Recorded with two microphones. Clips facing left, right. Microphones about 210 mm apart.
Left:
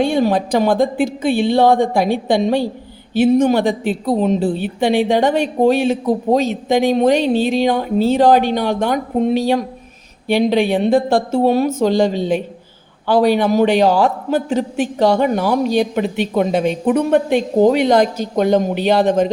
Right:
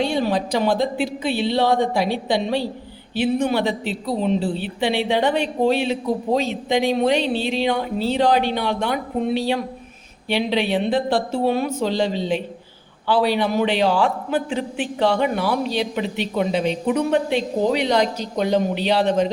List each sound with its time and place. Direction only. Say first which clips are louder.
0.0 s a woman's voice: left 5 dB; 50° left (ahead or behind)